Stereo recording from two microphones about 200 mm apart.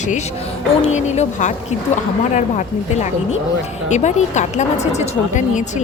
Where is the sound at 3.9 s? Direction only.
35° left (ahead or behind).